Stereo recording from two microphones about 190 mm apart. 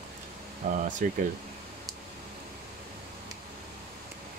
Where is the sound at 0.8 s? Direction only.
40° right (ahead or behind).